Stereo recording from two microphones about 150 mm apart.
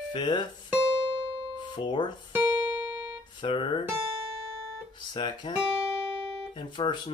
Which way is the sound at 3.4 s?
35° left (ahead or behind).